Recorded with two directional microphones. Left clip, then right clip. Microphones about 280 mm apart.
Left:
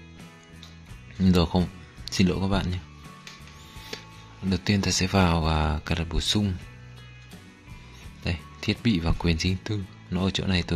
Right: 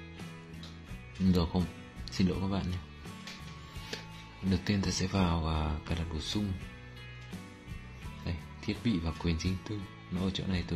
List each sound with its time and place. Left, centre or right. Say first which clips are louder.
1.2 s speech: left 8 dB; left
4.5 s speech: left 7 dB; left
8.2 s speech: left 12 dB; left